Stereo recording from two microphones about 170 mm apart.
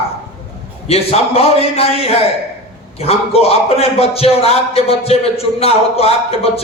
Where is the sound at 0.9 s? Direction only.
35° left (ahead or behind).